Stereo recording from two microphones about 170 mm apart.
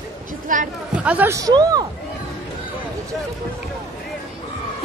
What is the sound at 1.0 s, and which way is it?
Speech, 10° right (ahead or behind).